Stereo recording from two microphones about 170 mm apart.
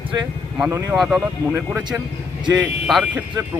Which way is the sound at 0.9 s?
5° right (ahead or behind).